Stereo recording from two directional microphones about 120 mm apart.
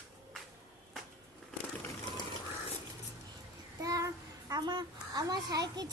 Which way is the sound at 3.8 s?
30° right (ahead or behind).